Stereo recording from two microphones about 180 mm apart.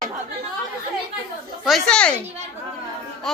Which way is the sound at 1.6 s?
Centre (ahead or behind).